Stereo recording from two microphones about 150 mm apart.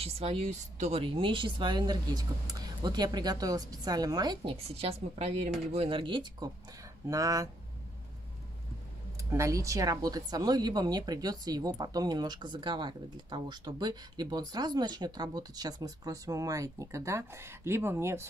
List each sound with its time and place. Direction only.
0.0 s a woman's voice: 40° right (ahead or behind)
4.6 s speech: 40° right (ahead or behind)
7.1 s a woman's voice: 25° right (ahead or behind)
9.3 s a woman's voice: 20° right (ahead or behind)